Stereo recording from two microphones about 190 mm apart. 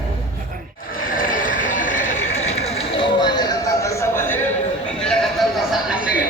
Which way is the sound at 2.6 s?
30° left (ahead or behind).